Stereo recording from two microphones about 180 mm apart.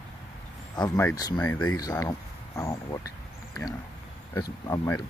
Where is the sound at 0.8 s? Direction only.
15° left (ahead or behind).